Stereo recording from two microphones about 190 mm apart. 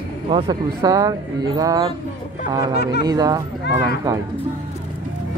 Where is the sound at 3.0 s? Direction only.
20° right (ahead or behind).